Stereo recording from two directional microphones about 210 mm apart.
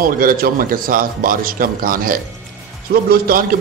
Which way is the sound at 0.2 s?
40° right (ahead or behind).